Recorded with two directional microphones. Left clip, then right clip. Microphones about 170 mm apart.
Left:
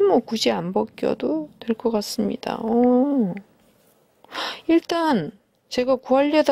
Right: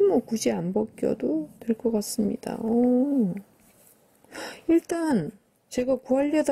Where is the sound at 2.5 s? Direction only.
20° right (ahead or behind).